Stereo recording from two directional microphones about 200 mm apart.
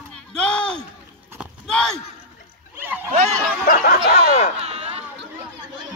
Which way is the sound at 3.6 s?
50° left (ahead or behind).